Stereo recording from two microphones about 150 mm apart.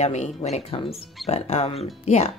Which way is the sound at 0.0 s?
50° left (ahead or behind).